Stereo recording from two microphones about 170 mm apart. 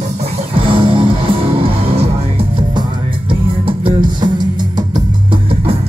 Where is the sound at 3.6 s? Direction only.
30° right (ahead or behind).